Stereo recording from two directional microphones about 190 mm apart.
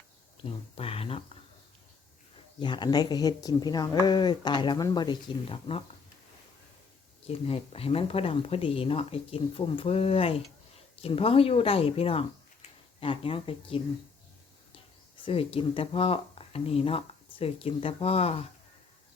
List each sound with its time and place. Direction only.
0.4 s speech: 30° left (ahead or behind)
2.6 s speech: 25° left (ahead or behind)
7.3 s speech: 30° left (ahead or behind)
15.1 s speech: 30° left (ahead or behind)